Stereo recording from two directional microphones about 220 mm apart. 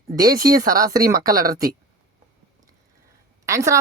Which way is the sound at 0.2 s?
15° right (ahead or behind).